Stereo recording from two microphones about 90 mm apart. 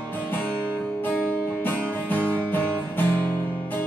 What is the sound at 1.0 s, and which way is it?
Music, 20° left (ahead or behind).